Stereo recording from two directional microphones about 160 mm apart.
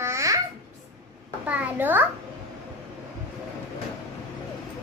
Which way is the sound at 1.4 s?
10° right (ahead or behind).